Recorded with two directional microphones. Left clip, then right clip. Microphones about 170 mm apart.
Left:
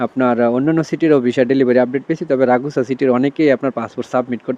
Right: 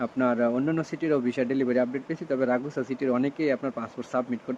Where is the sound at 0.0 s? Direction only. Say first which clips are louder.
Left 10 dB; 50° left (ahead or behind).